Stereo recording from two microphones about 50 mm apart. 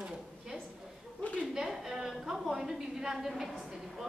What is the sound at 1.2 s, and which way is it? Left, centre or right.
Speech, left.